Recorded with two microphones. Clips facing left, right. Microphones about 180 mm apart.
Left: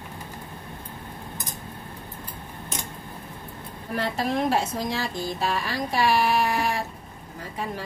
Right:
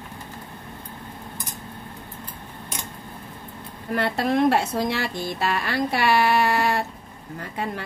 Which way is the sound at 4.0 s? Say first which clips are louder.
Right 4 dB; 65° right (ahead or behind).